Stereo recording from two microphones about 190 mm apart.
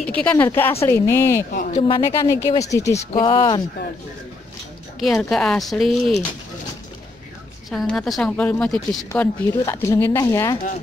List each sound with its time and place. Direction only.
0.1 s speech: 5° left (ahead or behind)
1.5 s speech: 45° left (ahead or behind)
1.9 s speech: 15° left (ahead or behind)
5.0 s speech: centre (ahead or behind)
7.7 s speech: 5° left (ahead or behind)